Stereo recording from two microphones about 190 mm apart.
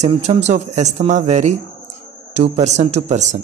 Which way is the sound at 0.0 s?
35° right (ahead or behind).